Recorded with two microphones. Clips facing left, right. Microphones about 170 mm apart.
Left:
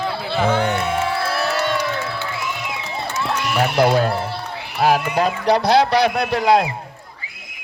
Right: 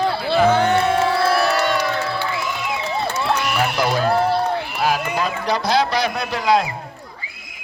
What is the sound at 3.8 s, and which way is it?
A man's voice, 65° left (ahead or behind).